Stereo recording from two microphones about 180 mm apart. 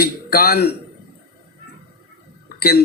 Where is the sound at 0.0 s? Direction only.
55° left (ahead or behind).